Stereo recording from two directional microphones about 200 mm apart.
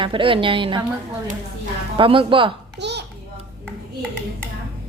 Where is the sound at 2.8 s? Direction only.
60° right (ahead or behind).